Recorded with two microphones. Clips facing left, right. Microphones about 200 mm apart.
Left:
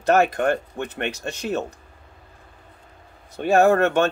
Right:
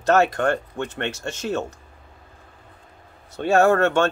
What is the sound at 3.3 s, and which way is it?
Speech, 15° left (ahead or behind).